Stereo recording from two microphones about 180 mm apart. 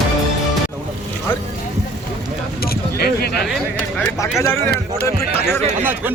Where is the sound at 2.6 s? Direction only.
60° left (ahead or behind).